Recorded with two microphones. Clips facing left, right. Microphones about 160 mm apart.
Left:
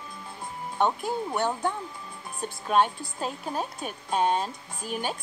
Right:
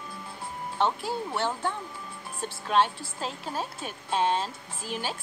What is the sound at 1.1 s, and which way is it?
Speech, 15° left (ahead or behind).